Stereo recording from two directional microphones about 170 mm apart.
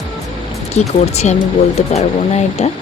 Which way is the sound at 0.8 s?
40° left (ahead or behind).